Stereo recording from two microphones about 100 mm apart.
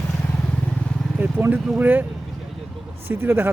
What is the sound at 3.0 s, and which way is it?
Speech, 20° right (ahead or behind).